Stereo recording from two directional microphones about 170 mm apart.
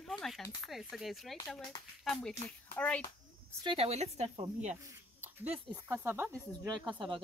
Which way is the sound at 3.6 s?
35° right (ahead or behind).